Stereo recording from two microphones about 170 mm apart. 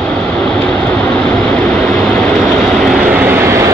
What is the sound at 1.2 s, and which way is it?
Vehicle, 5° left (ahead or behind).